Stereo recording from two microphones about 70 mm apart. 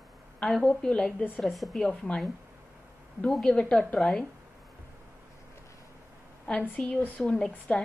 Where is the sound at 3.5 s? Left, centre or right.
Centre.